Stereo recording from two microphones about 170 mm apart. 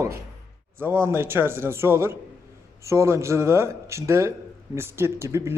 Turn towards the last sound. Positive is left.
turn(degrees=-15)  # may be behind; listen again after turning